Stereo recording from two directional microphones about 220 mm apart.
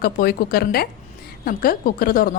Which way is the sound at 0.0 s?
45° left (ahead or behind).